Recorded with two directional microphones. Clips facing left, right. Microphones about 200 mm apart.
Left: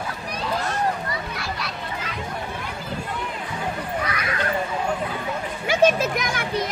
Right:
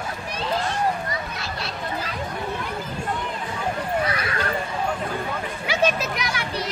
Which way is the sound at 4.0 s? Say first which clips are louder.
Right 3 dB; 30° right (ahead or behind).